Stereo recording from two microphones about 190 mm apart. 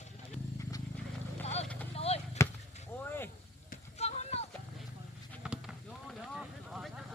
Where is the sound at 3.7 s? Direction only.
35° left (ahead or behind).